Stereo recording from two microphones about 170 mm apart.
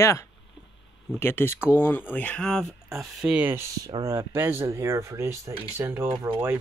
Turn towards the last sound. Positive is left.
turn(degrees=-25)  # may be behind; listen again after turning